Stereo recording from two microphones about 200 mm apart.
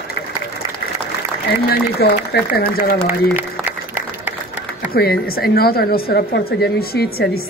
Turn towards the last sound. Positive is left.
turn(degrees=50)  # may be behind; listen again after turning